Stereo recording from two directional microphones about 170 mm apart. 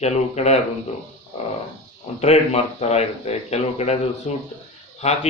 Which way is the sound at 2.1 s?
40° left (ahead or behind).